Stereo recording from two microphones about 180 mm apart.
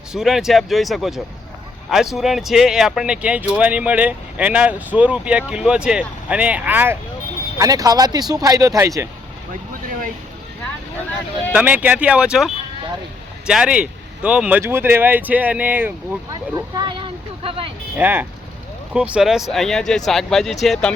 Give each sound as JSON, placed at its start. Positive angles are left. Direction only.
{"t": 0.1, "sound": "speech", "side_deg": 0}
{"t": 7.6, "sound": "speech", "side_deg": -20}
{"t": 11.5, "sound": "speech", "side_deg": -5}
{"t": 13.5, "sound": "speech", "side_deg": -5}
{"t": 16.6, "sound": "vehicle", "side_deg": -25}
{"t": 17.9, "sound": "speech", "side_deg": -10}